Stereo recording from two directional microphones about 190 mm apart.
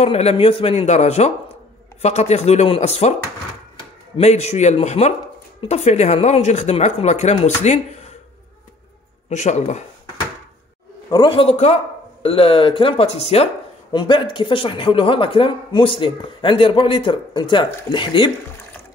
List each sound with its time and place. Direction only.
0.0 s speech: 35° left (ahead or behind)
4.2 s speech: 35° left (ahead or behind)
9.3 s speech: 40° left (ahead or behind)
11.1 s a man's voice: 25° left (ahead or behind)